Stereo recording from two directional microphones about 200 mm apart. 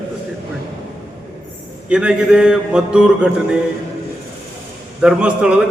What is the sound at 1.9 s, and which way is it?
A man's voice, 5° right (ahead or behind).